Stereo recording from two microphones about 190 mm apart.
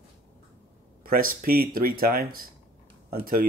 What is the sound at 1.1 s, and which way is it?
Speech, 50° right (ahead or behind).